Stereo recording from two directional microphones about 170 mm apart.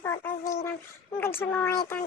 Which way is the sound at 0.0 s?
15° left (ahead or behind).